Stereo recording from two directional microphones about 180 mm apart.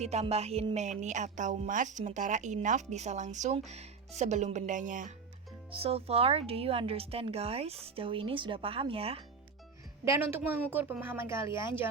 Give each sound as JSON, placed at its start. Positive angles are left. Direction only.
{"t": 0.0, "sound": "a woman's voice", "side_deg": -35}
{"t": 5.7, "sound": "a woman's voice", "side_deg": -30}
{"t": 10.0, "sound": "speech", "side_deg": -15}